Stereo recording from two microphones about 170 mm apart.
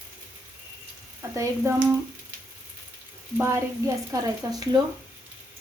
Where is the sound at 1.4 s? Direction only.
15° right (ahead or behind).